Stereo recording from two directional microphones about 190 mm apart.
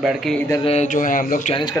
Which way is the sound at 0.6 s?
35° left (ahead or behind).